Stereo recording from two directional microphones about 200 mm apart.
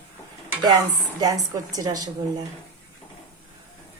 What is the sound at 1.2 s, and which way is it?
Speech, 20° right (ahead or behind).